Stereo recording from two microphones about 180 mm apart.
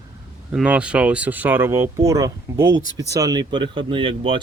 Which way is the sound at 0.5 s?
5° right (ahead or behind).